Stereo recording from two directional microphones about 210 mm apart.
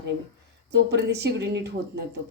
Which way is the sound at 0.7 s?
55° right (ahead or behind).